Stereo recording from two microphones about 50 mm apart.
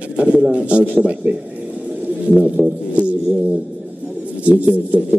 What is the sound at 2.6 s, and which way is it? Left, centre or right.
Speech, right.